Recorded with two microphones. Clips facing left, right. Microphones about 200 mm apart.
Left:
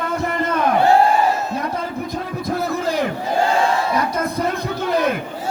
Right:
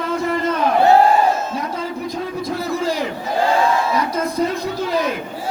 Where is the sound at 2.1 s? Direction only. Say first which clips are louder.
Even; 55° left (ahead or behind).